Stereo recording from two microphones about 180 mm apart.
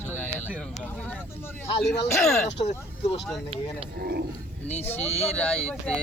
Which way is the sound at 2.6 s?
35° left (ahead or behind).